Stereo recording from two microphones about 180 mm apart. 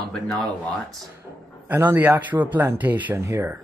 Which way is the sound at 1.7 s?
10° right (ahead or behind).